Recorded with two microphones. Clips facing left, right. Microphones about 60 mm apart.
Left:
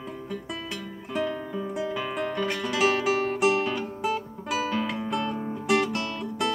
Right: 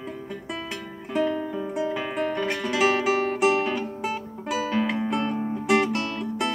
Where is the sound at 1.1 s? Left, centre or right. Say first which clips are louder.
Right 4 dB; centre.